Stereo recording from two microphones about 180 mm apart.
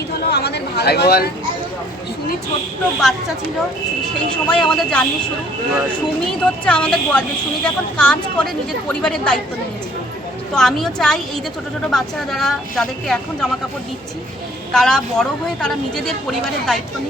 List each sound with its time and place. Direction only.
0.1 s a woman's voice: 65° left (ahead or behind)
3.0 s speech: centre (ahead or behind)
4.4 s speech: 5° left (ahead or behind)
6.2 s speech: 5° left (ahead or behind)
10.5 s speech: centre (ahead or behind)
14.7 s speech: 5° left (ahead or behind)